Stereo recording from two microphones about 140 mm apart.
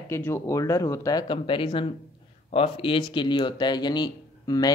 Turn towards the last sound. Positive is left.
turn(degrees=30)  # may be behind; listen again after turning